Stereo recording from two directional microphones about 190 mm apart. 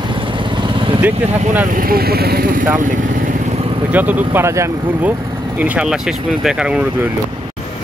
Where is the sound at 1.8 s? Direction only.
50° right (ahead or behind).